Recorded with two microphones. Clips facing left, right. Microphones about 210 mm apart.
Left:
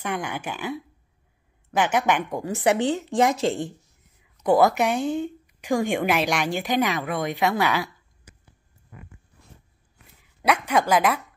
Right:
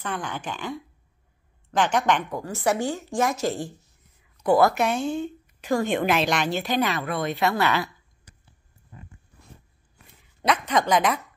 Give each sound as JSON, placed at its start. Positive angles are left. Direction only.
{"t": 0.0, "sound": "speech", "side_deg": 10}
{"t": 2.4, "sound": "a woman's voice", "side_deg": 20}
{"t": 10.4, "sound": "speech", "side_deg": 10}